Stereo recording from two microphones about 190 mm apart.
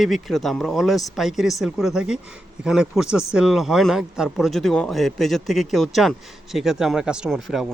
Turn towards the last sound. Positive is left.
turn(degrees=0)  # may be behind; listen again after turning